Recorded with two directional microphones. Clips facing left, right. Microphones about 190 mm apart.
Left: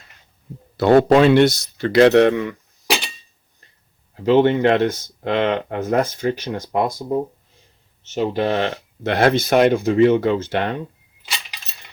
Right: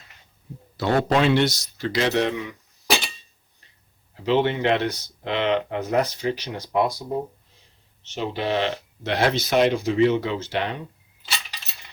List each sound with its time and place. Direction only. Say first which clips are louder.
0.8 s speech: left 8 dB; 60° left (ahead or behind)
4.3 s speech: left 6 dB; 50° left (ahead or behind)
8.0 s speech: left 6 dB; 45° left (ahead or behind)